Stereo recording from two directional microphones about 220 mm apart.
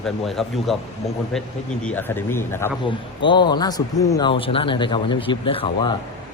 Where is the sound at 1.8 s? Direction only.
10° left (ahead or behind).